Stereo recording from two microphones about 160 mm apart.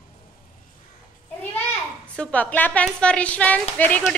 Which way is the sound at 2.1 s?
10° left (ahead or behind).